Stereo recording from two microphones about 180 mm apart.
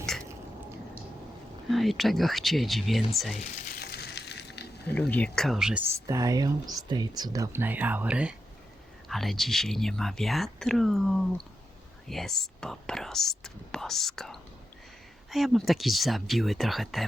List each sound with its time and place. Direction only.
1.7 s speech: centre (ahead or behind)
3.8 s crushing: 65° left (ahead or behind)
4.9 s speech: 10° left (ahead or behind)